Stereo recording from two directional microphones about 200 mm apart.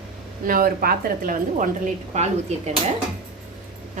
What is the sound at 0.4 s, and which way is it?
A woman's voice, 45° right (ahead or behind).